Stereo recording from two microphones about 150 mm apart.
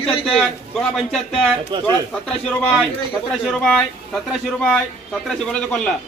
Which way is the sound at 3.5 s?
5° left (ahead or behind).